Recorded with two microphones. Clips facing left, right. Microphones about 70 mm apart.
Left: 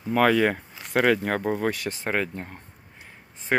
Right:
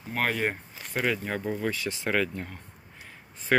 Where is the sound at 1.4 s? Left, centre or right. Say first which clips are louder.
Left 4 dB; left.